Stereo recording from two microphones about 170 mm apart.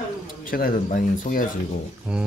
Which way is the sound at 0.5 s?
55° left (ahead or behind).